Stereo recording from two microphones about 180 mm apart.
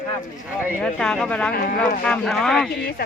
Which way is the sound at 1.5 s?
55° left (ahead or behind).